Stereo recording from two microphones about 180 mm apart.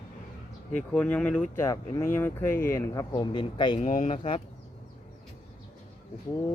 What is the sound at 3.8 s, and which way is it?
Speech, 45° left (ahead or behind).